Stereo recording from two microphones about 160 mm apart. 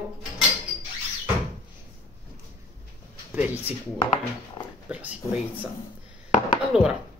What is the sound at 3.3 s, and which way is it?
Speech, 10° right (ahead or behind).